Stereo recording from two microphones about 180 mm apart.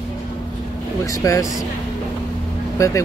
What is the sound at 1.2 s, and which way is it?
Speech, 20° left (ahead or behind).